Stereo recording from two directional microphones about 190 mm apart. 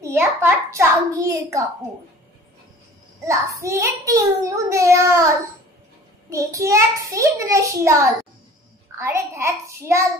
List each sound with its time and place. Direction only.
0.0 s a child's voice: 10° right (ahead or behind)
3.3 s a child's voice: 15° right (ahead or behind)
6.3 s a child's voice: 15° right (ahead or behind)
8.9 s a child's voice: 15° right (ahead or behind)